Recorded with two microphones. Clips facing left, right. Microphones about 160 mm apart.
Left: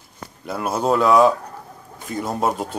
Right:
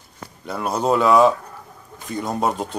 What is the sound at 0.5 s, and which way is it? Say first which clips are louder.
Speech: even; centre (ahead or behind).